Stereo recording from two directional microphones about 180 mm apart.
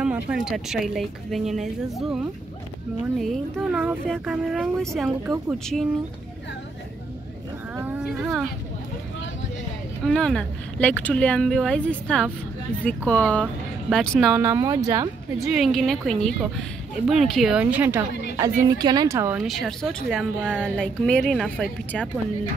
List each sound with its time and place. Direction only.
0.0 s speech: 5° right (ahead or behind)
5.2 s a woman's voice: 10° right (ahead or behind)
7.7 s a sound: 10° right (ahead or behind)
10.0 s speech: 5° left (ahead or behind)
14.3 s speech: 20° right (ahead or behind)
15.4 s a woman's voice: centre (ahead or behind)
19.4 s speech: centre (ahead or behind)